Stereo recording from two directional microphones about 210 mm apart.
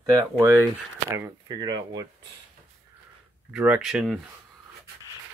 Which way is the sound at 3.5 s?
5° right (ahead or behind).